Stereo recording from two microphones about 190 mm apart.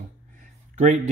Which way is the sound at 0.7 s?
35° right (ahead or behind).